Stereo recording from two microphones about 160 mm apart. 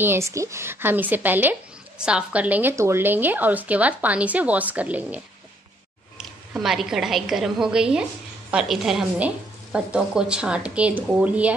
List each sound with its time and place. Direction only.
0.0 s a woman's voice: 15° right (ahead or behind)